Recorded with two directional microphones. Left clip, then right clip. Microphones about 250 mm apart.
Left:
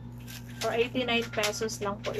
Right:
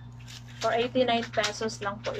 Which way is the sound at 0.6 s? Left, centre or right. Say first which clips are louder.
Right 3 dB; centre.